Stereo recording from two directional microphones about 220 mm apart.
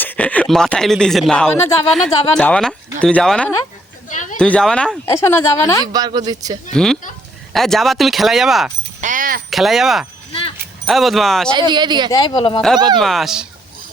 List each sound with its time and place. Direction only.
0.0 s speech: 5° left (ahead or behind)
4.1 s a sound: 35° left (ahead or behind)
4.4 s speech: 5° left (ahead or behind)
5.8 s speech: 15° right (ahead or behind)
6.7 s speech: 5° left (ahead or behind)
9.0 s a sound: 35° right (ahead or behind)
9.5 s speech: centre (ahead or behind)
11.7 s speech: 20° right (ahead or behind)
12.1 s speech: 20° left (ahead or behind)
13.0 s speech: centre (ahead or behind)